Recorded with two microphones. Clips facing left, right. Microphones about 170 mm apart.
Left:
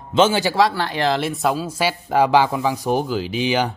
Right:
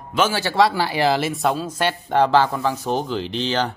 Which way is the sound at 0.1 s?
20° left (ahead or behind).